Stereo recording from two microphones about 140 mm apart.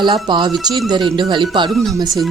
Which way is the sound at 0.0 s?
35° right (ahead or behind).